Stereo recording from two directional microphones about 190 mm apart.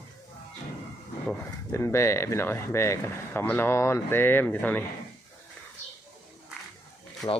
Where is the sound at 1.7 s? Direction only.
15° left (ahead or behind).